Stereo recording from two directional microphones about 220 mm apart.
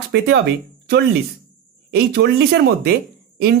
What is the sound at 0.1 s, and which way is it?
Speech, 50° right (ahead or behind).